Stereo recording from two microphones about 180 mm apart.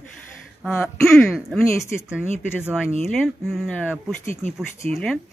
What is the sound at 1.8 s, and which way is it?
Speech, 15° left (ahead or behind).